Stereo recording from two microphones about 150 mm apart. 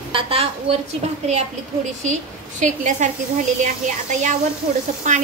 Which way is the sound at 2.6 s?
55° right (ahead or behind).